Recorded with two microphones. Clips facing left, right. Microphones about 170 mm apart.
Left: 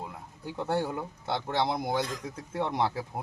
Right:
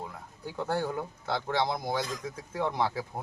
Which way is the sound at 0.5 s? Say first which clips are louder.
Left 1 dB; 25° left (ahead or behind).